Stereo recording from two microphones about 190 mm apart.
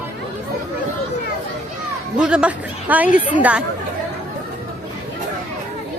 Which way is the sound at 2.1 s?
5° right (ahead or behind).